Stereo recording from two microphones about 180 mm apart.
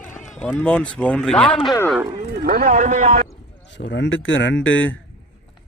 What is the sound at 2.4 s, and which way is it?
Speech, 55° right (ahead or behind).